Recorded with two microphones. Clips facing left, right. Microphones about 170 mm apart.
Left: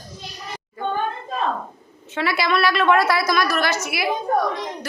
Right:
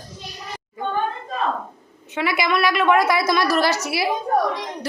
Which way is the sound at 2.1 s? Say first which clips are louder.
Even; 15° right (ahead or behind).